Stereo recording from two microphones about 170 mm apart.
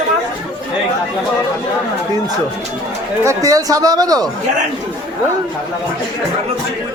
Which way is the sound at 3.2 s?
20° right (ahead or behind).